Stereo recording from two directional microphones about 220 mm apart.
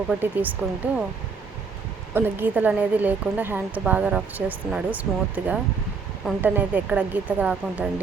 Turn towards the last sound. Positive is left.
turn(degrees=-5)  # may be behind; listen again after turning